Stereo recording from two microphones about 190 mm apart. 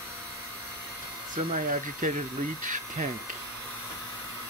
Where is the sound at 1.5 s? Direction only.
45° right (ahead or behind).